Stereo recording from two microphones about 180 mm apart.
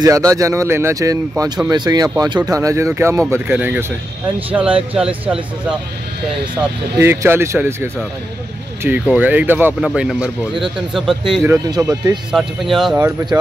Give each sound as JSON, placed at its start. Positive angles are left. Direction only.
{"t": 0.0, "sound": "speech", "side_deg": -20}
{"t": 4.9, "sound": "speech", "side_deg": -5}
{"t": 7.0, "sound": "speech", "side_deg": -15}
{"t": 11.4, "sound": "speech", "side_deg": -15}
{"t": 12.3, "sound": "speech", "side_deg": 0}
{"t": 12.9, "sound": "speech", "side_deg": -15}